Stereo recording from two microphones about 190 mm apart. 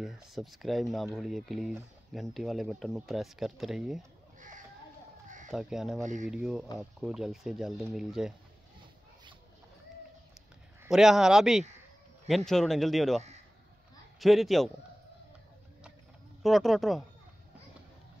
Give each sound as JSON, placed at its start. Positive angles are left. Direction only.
{"t": 0.0, "sound": "speech", "side_deg": 0}
{"t": 4.4, "sound": "children playing", "side_deg": -40}
{"t": 5.5, "sound": "speech", "side_deg": -5}
{"t": 5.9, "sound": "speech", "side_deg": -40}
{"t": 6.2, "sound": "speech", "side_deg": -5}
{"t": 10.8, "sound": "speech", "side_deg": 0}
{"t": 14.2, "sound": "speech", "side_deg": 0}
{"t": 16.4, "sound": "speech", "side_deg": 0}